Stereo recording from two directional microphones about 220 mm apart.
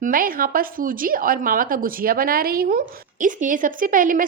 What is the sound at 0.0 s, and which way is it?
A woman's voice, 40° right (ahead or behind).